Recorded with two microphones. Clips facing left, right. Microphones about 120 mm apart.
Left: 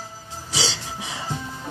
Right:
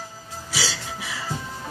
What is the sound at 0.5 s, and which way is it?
Music, 25° left (ahead or behind).